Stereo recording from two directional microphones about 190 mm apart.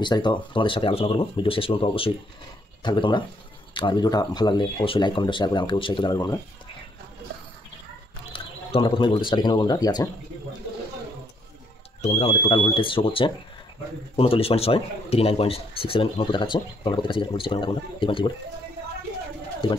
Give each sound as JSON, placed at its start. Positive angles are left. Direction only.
{"t": 0.0, "sound": "speech", "side_deg": 25}
{"t": 8.3, "sound": "speech", "side_deg": 30}
{"t": 12.0, "sound": "speech", "side_deg": 30}